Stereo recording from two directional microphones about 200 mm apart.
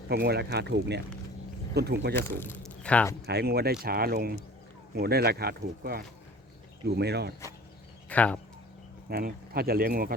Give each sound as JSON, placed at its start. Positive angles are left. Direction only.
{"t": 0.1, "sound": "speech", "side_deg": -55}
{"t": 2.1, "sound": "speech", "side_deg": 10}
{"t": 3.2, "sound": "speech", "side_deg": -55}
{"t": 8.1, "sound": "speech", "side_deg": 5}
{"t": 9.0, "sound": "speech", "side_deg": -50}